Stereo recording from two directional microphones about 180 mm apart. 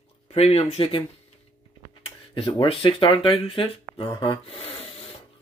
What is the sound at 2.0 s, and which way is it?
Speech, 30° left (ahead or behind).